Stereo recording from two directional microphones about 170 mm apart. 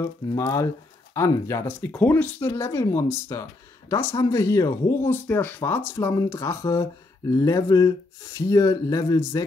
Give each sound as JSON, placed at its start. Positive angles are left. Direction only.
{"t": 0.0, "sound": "speech", "side_deg": 20}